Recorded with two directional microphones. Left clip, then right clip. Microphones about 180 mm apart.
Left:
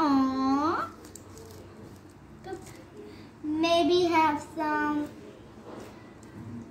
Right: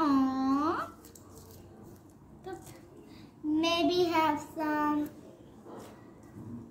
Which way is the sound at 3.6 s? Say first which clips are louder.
Left 4 dB; 15° right (ahead or behind).